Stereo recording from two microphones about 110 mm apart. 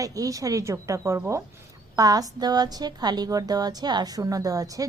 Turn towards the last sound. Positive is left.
turn(degrees=-35)  # may be behind; listen again after turning